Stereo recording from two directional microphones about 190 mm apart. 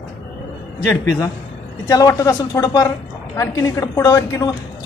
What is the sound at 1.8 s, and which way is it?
A woman's voice, 15° left (ahead or behind).